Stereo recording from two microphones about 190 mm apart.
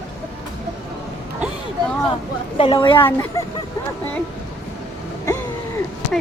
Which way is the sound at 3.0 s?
15° left (ahead or behind).